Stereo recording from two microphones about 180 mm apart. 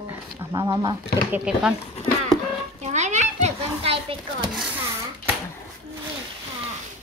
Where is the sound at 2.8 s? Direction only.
40° right (ahead or behind).